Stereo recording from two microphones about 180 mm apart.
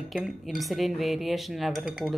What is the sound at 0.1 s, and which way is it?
Speech, centre (ahead or behind).